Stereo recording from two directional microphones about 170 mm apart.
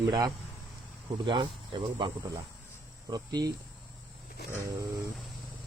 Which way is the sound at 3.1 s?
25° right (ahead or behind).